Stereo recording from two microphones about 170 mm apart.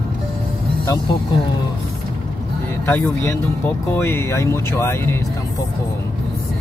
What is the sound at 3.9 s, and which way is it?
Speech, 15° left (ahead or behind).